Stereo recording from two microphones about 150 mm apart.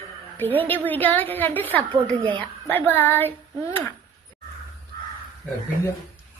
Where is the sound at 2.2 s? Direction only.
35° right (ahead or behind).